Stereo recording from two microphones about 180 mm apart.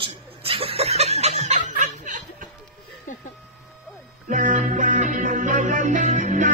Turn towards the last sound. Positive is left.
turn(degrees=-45)  # may be behind; listen again after turning